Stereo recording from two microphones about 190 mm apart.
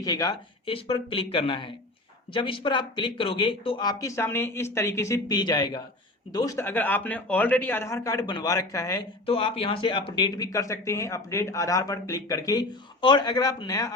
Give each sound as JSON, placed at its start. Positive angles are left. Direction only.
{"t": 0.0, "sound": "a man's voice", "side_deg": 20}
{"t": 9.2, "sound": "speech", "side_deg": 30}